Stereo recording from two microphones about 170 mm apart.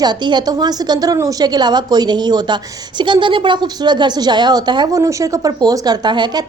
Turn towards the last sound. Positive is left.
turn(degrees=-25)  # may be behind; listen again after turning